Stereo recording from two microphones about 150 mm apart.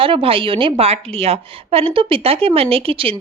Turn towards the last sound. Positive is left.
turn(degrees=-40)  # may be behind; listen again after turning